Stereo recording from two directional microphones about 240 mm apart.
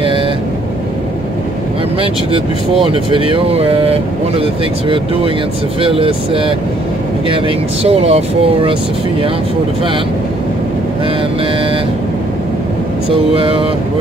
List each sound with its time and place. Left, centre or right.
2.0 s speech: right
13.1 s speech: right